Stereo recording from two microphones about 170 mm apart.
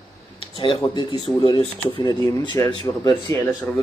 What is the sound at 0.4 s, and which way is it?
Speech, 30° left (ahead or behind).